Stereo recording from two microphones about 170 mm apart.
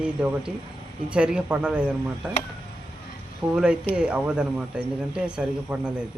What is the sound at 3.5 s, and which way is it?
Speech, 5° right (ahead or behind).